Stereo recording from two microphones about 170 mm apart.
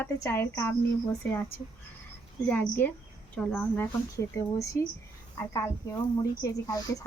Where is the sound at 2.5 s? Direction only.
10° left (ahead or behind).